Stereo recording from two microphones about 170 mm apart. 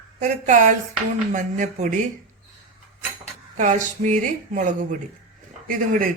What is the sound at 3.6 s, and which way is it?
A woman's voice, 45° right (ahead or behind).